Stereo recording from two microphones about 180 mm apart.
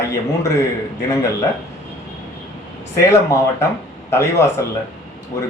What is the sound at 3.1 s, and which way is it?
Speech, 15° left (ahead or behind).